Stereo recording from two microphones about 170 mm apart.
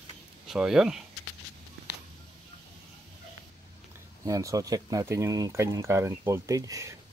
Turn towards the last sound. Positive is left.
turn(degrees=-20)  # may be behind; listen again after turning